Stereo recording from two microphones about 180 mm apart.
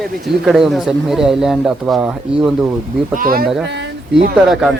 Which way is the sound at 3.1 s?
50° right (ahead or behind).